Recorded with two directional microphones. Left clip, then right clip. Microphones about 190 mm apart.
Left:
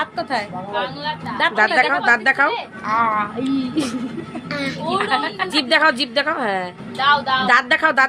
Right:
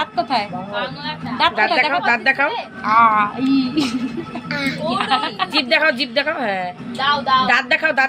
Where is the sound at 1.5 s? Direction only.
30° left (ahead or behind).